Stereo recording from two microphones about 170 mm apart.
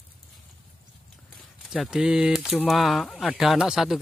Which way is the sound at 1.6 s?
Centre (ahead or behind).